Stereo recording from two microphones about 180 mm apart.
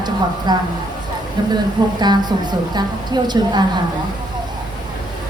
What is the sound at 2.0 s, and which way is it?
A woman's voice, 25° right (ahead or behind).